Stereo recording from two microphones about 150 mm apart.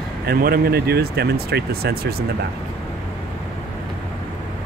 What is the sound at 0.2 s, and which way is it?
Speech, 85° right.